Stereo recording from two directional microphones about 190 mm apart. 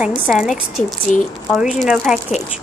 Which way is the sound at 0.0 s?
Centre (ahead or behind).